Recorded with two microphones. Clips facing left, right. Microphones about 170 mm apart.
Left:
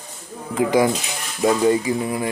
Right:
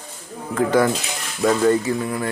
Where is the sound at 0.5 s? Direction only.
15° left (ahead or behind).